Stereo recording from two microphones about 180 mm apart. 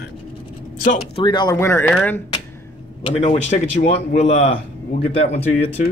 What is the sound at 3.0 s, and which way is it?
A man's voice, 40° left (ahead or behind).